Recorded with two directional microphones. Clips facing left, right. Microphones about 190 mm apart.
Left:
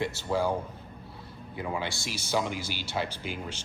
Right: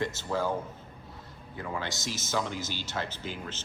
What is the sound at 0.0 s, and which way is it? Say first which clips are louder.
Speech: left 2 dB; 15° left (ahead or behind).